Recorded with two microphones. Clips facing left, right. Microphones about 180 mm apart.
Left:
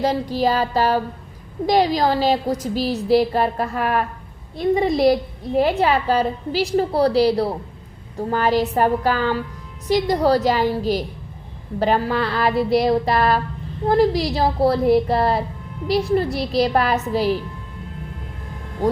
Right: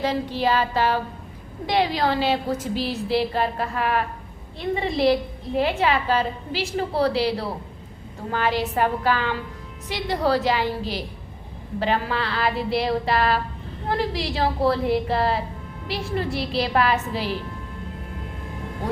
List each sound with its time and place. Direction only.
0.0 s a woman's voice: 40° left (ahead or behind)